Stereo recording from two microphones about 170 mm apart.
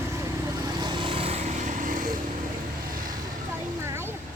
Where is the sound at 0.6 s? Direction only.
25° right (ahead or behind); by 3.2 s 55° right (ahead or behind).